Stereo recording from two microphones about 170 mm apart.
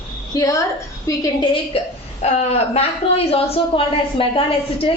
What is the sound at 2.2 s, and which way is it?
A woman's voice, 40° left (ahead or behind).